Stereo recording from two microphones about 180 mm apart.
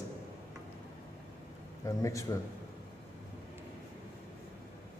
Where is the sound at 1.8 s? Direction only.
20° left (ahead or behind).